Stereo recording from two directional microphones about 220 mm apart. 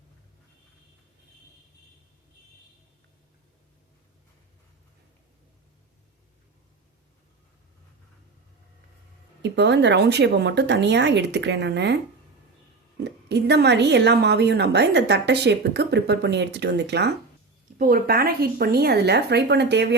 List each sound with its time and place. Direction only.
9.4 s a woman's voice: 50° right (ahead or behind)
13.0 s a woman's voice: 50° right (ahead or behind)